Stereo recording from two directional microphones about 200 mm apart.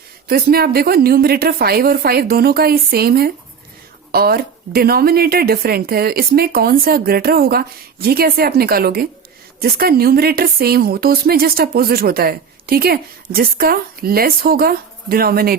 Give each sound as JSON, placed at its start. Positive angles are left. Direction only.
{"t": 0.3, "sound": "speech", "side_deg": -50}